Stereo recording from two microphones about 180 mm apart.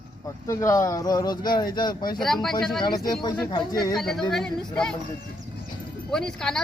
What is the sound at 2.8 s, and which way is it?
Speech, 25° left (ahead or behind).